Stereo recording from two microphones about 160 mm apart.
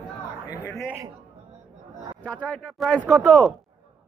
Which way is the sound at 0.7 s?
10° left (ahead or behind).